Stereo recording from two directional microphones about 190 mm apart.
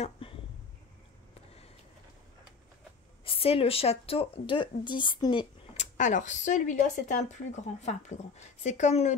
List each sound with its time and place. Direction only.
3.3 s speech: 30° left (ahead or behind)
5.8 s speech: 40° left (ahead or behind)